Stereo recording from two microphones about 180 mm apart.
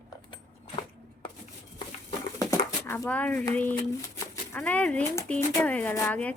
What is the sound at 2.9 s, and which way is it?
Speech, 10° left (ahead or behind).